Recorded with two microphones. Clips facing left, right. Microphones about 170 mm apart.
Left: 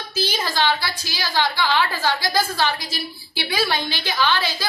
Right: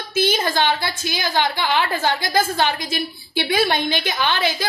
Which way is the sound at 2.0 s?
20° right (ahead or behind).